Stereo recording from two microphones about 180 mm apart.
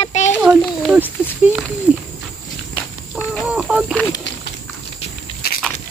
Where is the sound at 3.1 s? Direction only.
10° left (ahead or behind).